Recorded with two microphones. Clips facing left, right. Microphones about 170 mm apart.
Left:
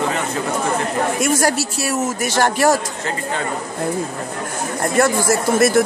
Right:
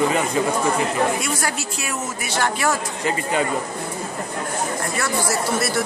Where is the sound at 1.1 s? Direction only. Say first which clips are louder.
Left 7 dB; 45° left (ahead or behind).